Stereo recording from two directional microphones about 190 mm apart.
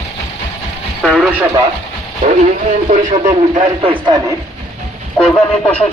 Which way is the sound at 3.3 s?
25° right (ahead or behind).